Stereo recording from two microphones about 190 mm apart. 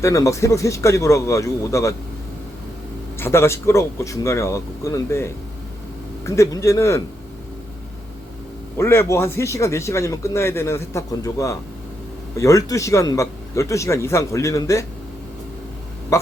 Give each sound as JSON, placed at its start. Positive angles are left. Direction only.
{"t": 0.0, "sound": "speech", "side_deg": 15}
{"t": 3.2, "sound": "speech", "side_deg": 15}
{"t": 8.8, "sound": "speech", "side_deg": 15}